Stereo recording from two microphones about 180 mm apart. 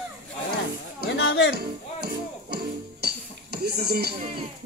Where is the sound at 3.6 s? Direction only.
65° right (ahead or behind).